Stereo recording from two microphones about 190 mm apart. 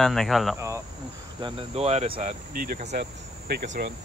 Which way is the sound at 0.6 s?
15° right (ahead or behind).